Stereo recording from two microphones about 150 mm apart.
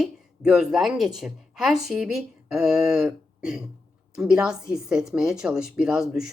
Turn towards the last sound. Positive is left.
turn(degrees=-5)  # may be behind; listen again after turning